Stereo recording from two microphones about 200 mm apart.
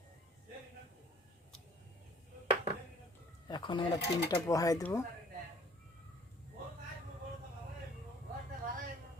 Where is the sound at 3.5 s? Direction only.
25° left (ahead or behind).